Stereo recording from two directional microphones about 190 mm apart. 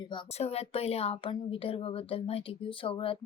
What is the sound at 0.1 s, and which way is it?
Speech, 30° left (ahead or behind).